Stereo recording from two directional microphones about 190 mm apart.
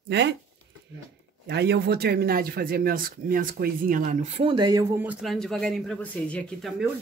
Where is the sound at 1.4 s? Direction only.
60° right (ahead or behind).